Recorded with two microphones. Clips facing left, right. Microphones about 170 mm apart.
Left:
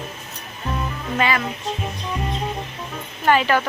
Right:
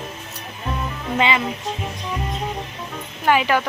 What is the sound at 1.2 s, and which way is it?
Speech, 20° right (ahead or behind).